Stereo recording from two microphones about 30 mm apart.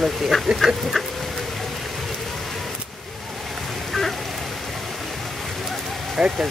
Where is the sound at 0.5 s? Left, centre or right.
Centre.